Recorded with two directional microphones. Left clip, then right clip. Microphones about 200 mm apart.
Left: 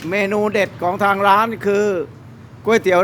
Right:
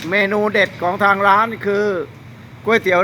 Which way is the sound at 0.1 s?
10° left (ahead or behind).